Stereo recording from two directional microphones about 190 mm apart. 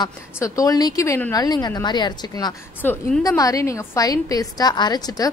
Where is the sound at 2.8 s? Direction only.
10° left (ahead or behind).